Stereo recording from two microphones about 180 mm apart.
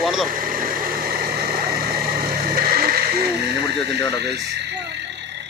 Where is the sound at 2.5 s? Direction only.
55° right (ahead or behind).